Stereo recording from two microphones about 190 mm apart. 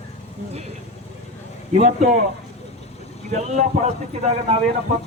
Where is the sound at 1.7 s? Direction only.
40° right (ahead or behind).